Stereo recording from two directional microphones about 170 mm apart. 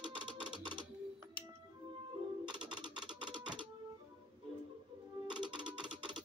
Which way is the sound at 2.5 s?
25° right (ahead or behind).